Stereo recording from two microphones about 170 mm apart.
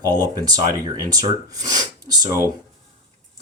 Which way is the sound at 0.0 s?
20° right (ahead or behind).